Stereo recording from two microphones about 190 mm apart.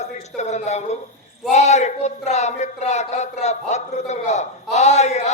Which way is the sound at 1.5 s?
35° left (ahead or behind).